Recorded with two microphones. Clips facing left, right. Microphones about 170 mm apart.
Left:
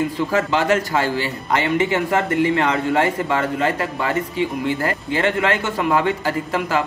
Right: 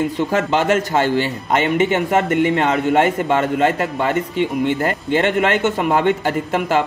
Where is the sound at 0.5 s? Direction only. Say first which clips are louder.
Right 2 dB; 25° right (ahead or behind).